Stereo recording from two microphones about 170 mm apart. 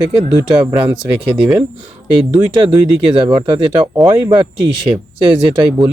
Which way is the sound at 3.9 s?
25° right (ahead or behind).